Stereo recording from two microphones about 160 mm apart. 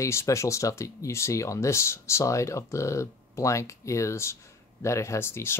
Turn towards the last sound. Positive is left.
turn(degrees=15)  # may be behind; listen again after turning